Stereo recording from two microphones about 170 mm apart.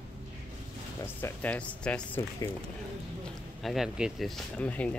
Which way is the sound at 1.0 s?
10° left (ahead or behind).